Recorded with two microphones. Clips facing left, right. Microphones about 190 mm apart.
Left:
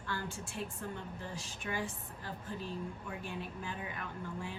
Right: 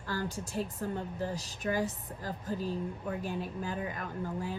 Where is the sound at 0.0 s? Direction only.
40° right (ahead or behind).